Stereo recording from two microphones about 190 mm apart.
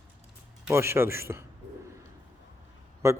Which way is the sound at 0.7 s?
15° right (ahead or behind).